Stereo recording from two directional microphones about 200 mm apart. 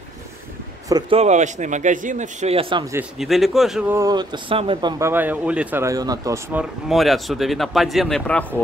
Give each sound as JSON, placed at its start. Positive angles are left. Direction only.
{"t": 0.8, "sound": "speech", "side_deg": -20}
{"t": 1.2, "sound": "a man's voice", "side_deg": -35}
{"t": 3.2, "sound": "speech", "side_deg": 0}
{"t": 4.9, "sound": "speech", "side_deg": -10}
{"t": 6.6, "sound": "speech", "side_deg": 0}